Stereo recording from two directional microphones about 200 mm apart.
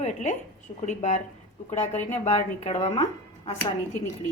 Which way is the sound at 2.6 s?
30° left (ahead or behind).